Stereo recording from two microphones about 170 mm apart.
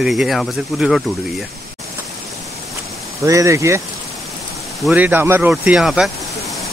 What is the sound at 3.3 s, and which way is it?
Speech, 15° right (ahead or behind).